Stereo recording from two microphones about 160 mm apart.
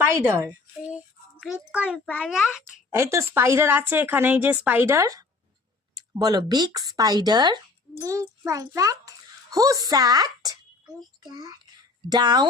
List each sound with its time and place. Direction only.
0.0 s a woman's voice: 20° right (ahead or behind)
1.4 s a child's voice: 5° right (ahead or behind)
2.9 s a child's voice: 15° right (ahead or behind)
11.2 s a sound: 25° right (ahead or behind)